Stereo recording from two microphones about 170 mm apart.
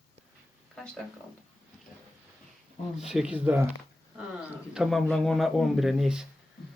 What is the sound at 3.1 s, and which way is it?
A woman's voice, 5° right (ahead or behind).